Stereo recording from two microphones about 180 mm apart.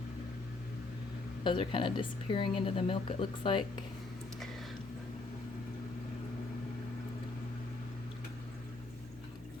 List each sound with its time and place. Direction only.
1.5 s speech: 25° left (ahead or behind)